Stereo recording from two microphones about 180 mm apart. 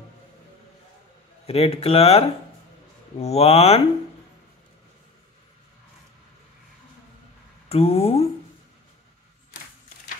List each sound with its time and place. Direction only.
1.4 s speech: 35° left (ahead or behind)
7.7 s speech: 35° left (ahead or behind)